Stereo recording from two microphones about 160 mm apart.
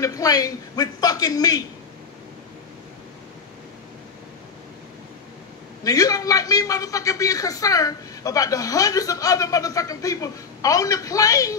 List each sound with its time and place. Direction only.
0.0 s a man's voice: 20° left (ahead or behind)
5.9 s a man's voice: 20° left (ahead or behind)